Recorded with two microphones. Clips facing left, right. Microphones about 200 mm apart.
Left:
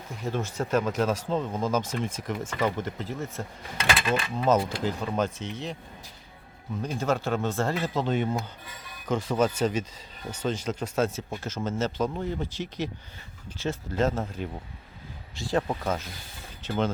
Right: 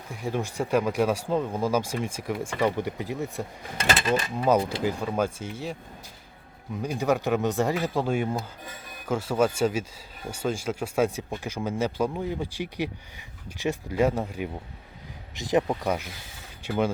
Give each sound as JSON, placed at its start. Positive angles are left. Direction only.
{"t": 0.1, "sound": "speech", "side_deg": -15}
{"t": 6.8, "sound": "speech", "side_deg": -15}